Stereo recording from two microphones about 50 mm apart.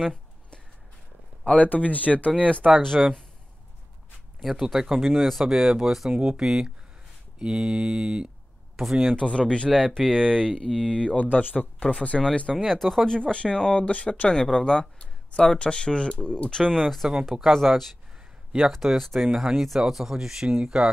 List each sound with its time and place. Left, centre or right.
0.0 s a sound: centre
1.4 s speech: left
2.6 s speech: centre
4.4 s speech: centre
8.7 s speech: centre
9.1 s speech: centre
11.3 s speech: left; by 12.5 s centre
12.5 s speech: centre
13.1 s speech: centre
14.3 s speech: centre
16.8 s speech: centre